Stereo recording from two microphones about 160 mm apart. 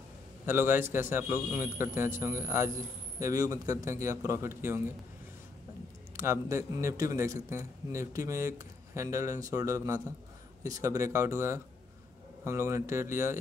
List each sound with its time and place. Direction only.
0.5 s a man's voice: 15° right (ahead or behind)
6.1 s a man's voice: 20° right (ahead or behind)